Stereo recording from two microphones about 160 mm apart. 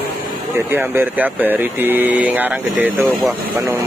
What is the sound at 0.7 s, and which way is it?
Speech, 15° right (ahead or behind).